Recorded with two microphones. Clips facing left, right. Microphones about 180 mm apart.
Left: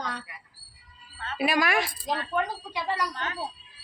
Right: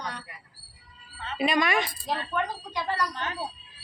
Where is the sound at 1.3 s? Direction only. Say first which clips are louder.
Even; 5° left (ahead or behind).